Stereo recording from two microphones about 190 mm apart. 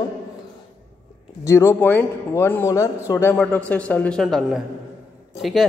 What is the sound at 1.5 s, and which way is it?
A man's voice, 15° left (ahead or behind).